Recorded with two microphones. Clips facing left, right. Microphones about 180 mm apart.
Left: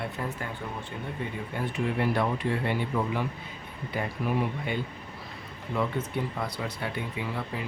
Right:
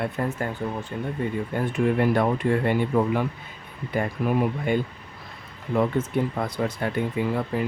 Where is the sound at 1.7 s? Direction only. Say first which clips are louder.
Right 6 dB; 50° right (ahead or behind).